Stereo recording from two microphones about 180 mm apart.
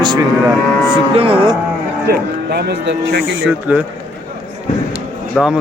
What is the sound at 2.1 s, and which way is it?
Speech, 65° right (ahead or behind).